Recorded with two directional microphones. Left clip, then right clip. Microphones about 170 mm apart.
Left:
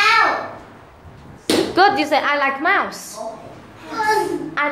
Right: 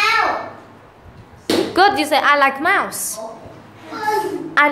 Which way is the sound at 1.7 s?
20° right (ahead or behind).